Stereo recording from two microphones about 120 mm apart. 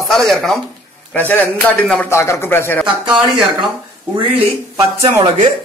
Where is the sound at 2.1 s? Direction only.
20° left (ahead or behind).